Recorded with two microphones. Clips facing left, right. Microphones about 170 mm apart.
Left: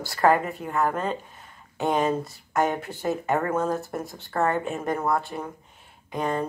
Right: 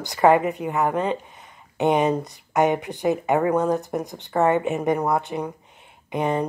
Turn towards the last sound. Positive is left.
turn(degrees=-20)  # may be behind; listen again after turning